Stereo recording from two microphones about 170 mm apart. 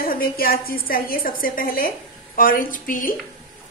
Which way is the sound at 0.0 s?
60° left (ahead or behind).